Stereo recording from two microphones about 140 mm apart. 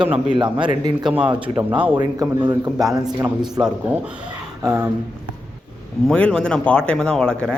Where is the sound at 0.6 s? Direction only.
35° right (ahead or behind).